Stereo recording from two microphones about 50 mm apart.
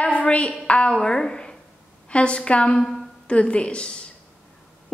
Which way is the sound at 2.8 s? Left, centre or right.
Centre.